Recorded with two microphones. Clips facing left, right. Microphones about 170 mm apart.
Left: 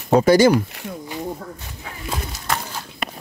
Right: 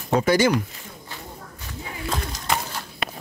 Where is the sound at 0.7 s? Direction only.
70° left (ahead or behind).